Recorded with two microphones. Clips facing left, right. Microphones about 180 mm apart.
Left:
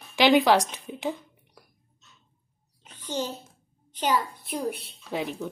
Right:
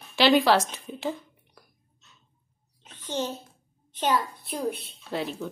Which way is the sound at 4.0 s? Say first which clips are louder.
Even; 10° left (ahead or behind).